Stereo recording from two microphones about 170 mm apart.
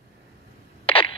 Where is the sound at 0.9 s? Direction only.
35° left (ahead or behind).